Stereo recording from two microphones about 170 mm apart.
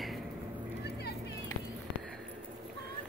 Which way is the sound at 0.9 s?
75° left (ahead or behind).